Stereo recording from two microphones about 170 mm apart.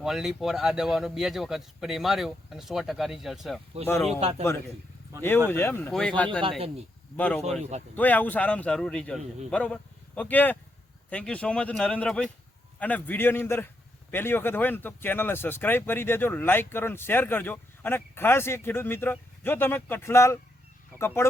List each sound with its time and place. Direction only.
0.0 s speech: centre (ahead or behind)
4.2 s a man's voice: 40° right (ahead or behind)
5.5 s speech: 15° left (ahead or behind)